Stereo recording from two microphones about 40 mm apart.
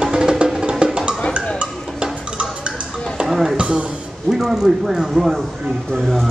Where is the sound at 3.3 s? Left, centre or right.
Centre.